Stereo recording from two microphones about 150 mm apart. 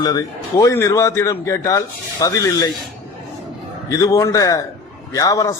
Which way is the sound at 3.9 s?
25° left (ahead or behind).